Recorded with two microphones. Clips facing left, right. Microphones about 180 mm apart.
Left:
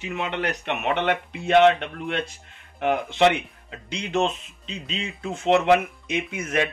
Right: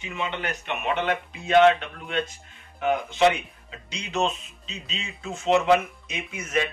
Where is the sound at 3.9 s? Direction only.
50° left (ahead or behind).